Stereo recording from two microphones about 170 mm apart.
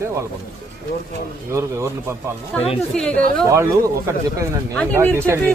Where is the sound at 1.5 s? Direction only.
15° right (ahead or behind).